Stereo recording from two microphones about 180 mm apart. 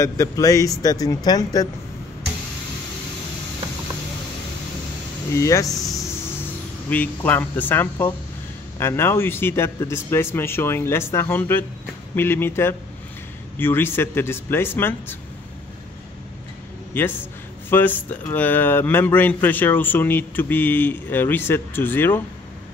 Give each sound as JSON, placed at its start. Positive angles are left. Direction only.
{"t": 0.0, "sound": "speech", "side_deg": 20}
{"t": 5.3, "sound": "a man's voice", "side_deg": 15}
{"t": 6.9, "sound": "a man's voice", "side_deg": 10}
{"t": 17.0, "sound": "a man's voice", "side_deg": 10}